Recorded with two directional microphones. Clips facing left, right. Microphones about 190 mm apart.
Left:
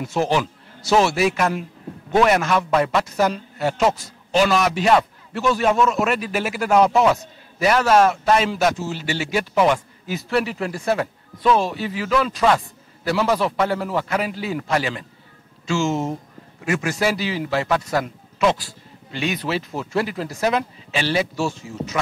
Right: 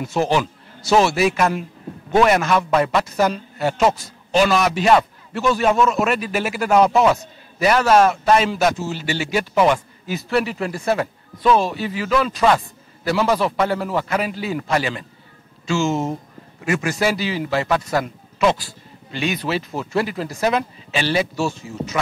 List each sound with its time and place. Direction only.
0.1 s a man's voice: 15° right (ahead or behind)
15.9 s speech: 30° right (ahead or behind)
16.6 s a man's voice: 10° right (ahead or behind)
19.7 s speech: 25° right (ahead or behind)
20.0 s a man's voice: 15° right (ahead or behind)
21.4 s speech: 30° right (ahead or behind)